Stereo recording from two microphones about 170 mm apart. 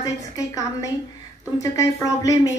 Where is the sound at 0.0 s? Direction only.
20° left (ahead or behind).